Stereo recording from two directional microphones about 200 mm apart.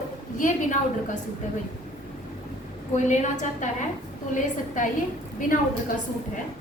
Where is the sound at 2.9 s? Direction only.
35° left (ahead or behind).